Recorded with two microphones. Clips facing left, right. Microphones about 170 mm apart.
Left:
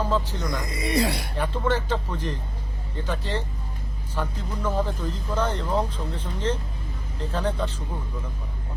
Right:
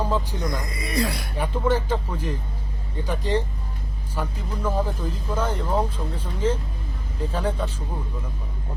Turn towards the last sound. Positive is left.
turn(degrees=-10)  # may be behind; listen again after turning